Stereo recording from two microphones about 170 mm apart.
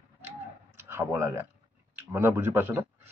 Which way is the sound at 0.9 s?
15° right (ahead or behind).